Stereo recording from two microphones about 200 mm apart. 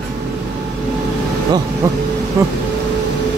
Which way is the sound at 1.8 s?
15° right (ahead or behind).